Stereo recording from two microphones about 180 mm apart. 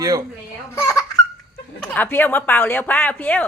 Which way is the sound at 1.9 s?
10° left (ahead or behind).